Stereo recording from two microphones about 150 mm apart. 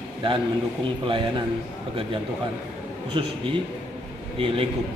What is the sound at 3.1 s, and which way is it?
Speech, 40° right (ahead or behind).